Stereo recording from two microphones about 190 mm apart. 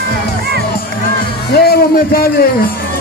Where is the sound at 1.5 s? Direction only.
55° left (ahead or behind).